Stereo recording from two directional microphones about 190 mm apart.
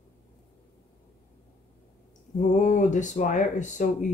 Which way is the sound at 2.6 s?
40° left (ahead or behind).